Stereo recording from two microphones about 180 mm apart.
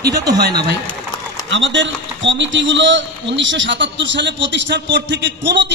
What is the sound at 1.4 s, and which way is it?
A man's voice, 90° right.